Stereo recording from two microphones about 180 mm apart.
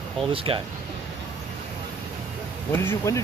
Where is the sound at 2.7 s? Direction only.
15° left (ahead or behind).